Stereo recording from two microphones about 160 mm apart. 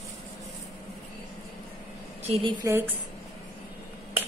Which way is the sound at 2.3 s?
30° right (ahead or behind).